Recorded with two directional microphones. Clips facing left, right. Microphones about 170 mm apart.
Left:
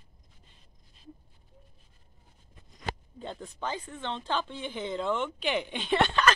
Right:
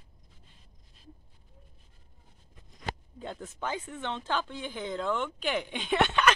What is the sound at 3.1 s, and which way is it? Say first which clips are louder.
Speech: even; 5° right (ahead or behind).